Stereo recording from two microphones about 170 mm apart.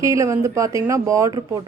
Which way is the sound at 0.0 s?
20° right (ahead or behind).